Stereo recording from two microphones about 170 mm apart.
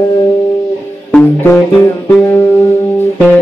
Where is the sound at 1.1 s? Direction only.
10° left (ahead or behind).